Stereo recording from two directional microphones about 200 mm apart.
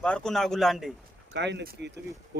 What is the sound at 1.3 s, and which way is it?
Speech, 60° right (ahead or behind).